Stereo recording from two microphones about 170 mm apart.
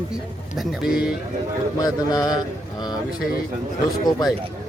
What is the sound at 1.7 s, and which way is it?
Speech, 20° left (ahead or behind).